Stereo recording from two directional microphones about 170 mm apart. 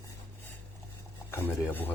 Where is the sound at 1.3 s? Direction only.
15° left (ahead or behind).